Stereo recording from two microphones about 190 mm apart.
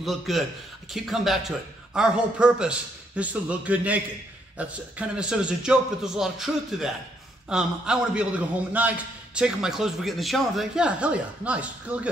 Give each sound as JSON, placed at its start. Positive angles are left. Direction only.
{"t": 0.0, "sound": "a man's voice", "side_deg": 0}